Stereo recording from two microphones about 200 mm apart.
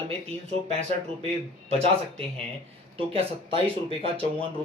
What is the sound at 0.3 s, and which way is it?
Speech, 30° right (ahead or behind).